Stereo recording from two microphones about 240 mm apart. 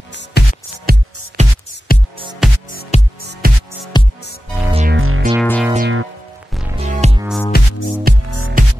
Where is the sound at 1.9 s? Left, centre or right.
Left.